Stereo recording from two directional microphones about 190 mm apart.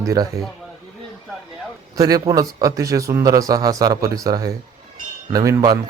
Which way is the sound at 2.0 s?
20° right (ahead or behind).